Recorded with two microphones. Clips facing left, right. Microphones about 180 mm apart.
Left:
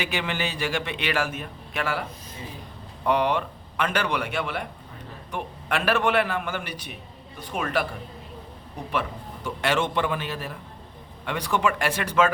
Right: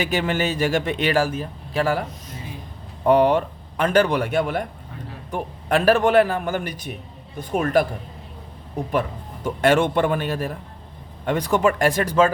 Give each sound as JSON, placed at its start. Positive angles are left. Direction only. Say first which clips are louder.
{"t": 0.0, "sound": "a man's voice", "louder": "right 6 dB", "side_deg": -40}
{"t": 3.1, "sound": "a man's voice", "louder": "right 7 dB", "side_deg": -45}
{"t": 8.9, "sound": "a man's voice", "louder": "right 4 dB", "side_deg": -45}